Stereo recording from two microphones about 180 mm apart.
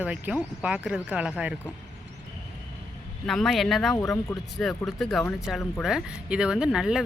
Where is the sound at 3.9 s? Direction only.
20° left (ahead or behind).